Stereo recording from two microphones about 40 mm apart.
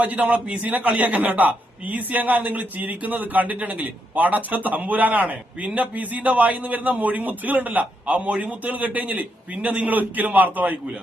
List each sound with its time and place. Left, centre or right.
0.0 s a man's voice: right